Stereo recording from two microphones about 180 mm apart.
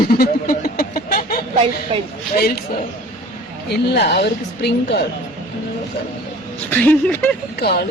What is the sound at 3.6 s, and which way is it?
Speech, 70° left (ahead or behind).